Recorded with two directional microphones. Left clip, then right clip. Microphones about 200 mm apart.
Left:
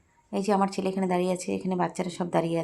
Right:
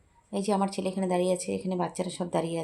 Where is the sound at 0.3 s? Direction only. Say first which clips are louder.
Left 3 dB; 25° left (ahead or behind).